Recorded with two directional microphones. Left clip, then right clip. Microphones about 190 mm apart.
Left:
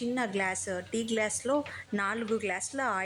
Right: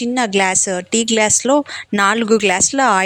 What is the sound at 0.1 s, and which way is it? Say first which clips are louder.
Speech: right 16 dB; 45° right (ahead or behind).